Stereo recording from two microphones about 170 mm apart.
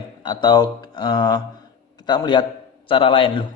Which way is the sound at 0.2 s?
25° left (ahead or behind).